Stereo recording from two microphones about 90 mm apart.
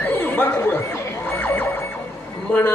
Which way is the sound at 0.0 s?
25° left (ahead or behind).